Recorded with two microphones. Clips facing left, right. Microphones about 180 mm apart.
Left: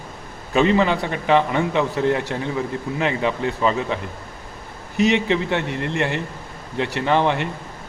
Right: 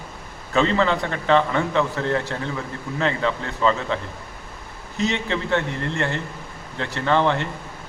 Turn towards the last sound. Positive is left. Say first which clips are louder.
# left 1 dB
turn(degrees=15)  # may be behind; listen again after turning